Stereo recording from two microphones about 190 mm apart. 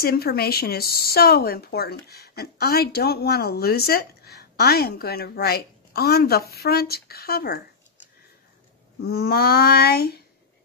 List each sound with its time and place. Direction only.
0.0 s speech: 55° left (ahead or behind)
9.0 s speech: 55° left (ahead or behind)